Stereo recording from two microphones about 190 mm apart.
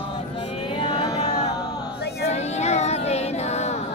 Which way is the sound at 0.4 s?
30° left (ahead or behind).